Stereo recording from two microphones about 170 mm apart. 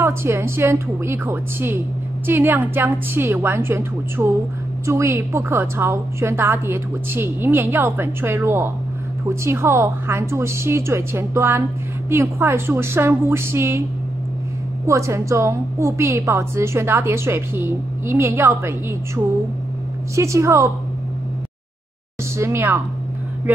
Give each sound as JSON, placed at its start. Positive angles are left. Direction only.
{"t": 0.0, "sound": "a woman's voice", "side_deg": -15}
{"t": 14.9, "sound": "a woman's voice", "side_deg": -15}
{"t": 22.4, "sound": "a woman's voice", "side_deg": -15}